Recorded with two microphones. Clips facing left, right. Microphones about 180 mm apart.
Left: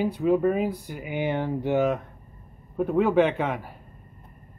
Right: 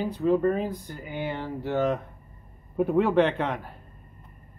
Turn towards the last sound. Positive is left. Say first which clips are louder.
# left 1 dB
turn(degrees=5)  # may be behind; listen again after turning